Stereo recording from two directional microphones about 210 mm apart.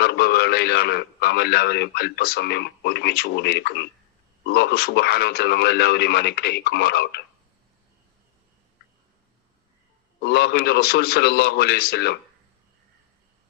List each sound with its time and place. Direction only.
0.0 s a man's voice: 50° left (ahead or behind)
10.2 s speech: 50° left (ahead or behind)